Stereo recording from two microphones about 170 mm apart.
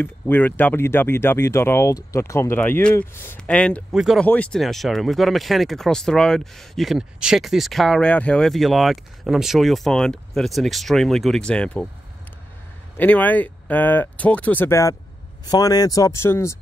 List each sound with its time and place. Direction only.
0.0 s speech: 10° left (ahead or behind)
12.9 s speech: 10° left (ahead or behind)